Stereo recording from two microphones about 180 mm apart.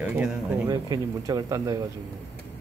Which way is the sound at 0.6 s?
20° right (ahead or behind).